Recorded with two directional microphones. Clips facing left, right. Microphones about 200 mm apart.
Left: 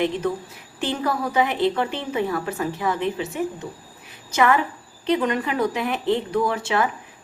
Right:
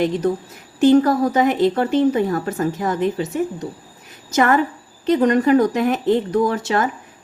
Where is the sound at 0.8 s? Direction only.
45° right (ahead or behind).